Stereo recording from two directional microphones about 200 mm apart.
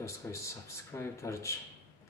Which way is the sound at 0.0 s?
15° left (ahead or behind).